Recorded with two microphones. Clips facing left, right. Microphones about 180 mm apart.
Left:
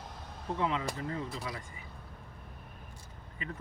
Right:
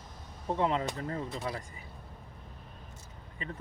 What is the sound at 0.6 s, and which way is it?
Speech, 45° right (ahead or behind).